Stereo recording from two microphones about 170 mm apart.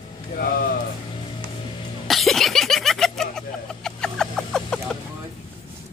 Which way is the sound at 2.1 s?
Centre (ahead or behind).